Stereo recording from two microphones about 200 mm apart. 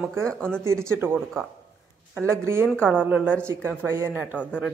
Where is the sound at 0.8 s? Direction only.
10° right (ahead or behind).